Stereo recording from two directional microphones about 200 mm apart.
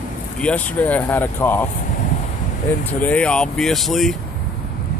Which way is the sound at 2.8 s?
5° left (ahead or behind).